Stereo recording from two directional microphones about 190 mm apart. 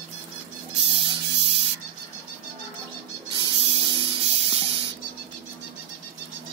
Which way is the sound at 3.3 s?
25° right (ahead or behind).